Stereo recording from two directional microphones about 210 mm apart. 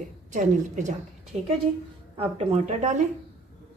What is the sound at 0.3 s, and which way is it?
Speech, 35° right (ahead or behind).